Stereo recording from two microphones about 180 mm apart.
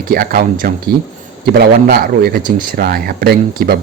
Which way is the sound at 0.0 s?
55° right (ahead or behind).